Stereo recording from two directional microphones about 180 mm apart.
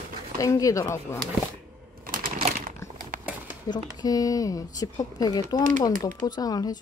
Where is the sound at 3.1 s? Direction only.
45° right (ahead or behind).